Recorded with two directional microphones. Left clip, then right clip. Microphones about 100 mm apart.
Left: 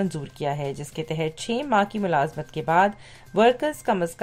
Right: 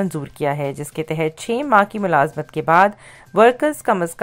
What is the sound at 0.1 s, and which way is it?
A woman's voice, 35° right (ahead or behind).